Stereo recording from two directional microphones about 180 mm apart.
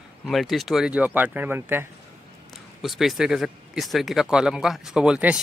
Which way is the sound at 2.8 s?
Centre (ahead or behind).